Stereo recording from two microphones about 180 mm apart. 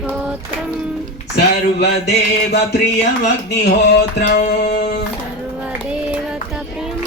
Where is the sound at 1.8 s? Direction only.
65° left (ahead or behind).